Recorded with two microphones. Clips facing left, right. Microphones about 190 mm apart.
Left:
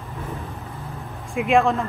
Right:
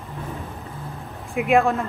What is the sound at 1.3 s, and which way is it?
Speech, 5° right (ahead or behind).